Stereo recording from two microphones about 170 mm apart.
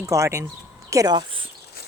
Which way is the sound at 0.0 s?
20° right (ahead or behind).